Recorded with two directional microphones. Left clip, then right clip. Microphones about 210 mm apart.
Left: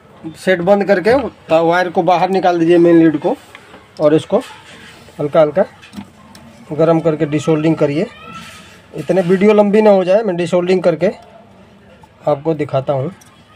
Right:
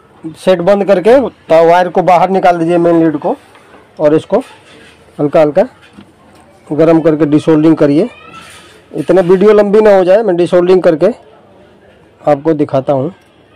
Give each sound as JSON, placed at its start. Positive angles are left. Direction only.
{"t": 0.3, "sound": "speech", "side_deg": -40}
{"t": 5.1, "sound": "speech", "side_deg": -25}
{"t": 6.8, "sound": "speech", "side_deg": -25}
{"t": 12.3, "sound": "speech", "side_deg": -25}